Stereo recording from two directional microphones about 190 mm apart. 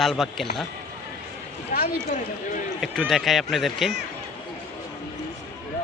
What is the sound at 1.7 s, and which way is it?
Speech, 45° left (ahead or behind).